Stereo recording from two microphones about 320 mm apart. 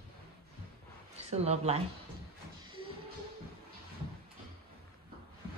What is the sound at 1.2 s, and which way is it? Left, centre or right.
Speech, centre.